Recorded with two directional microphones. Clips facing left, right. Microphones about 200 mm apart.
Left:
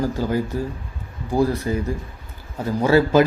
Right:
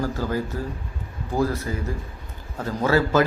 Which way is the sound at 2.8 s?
15° left (ahead or behind).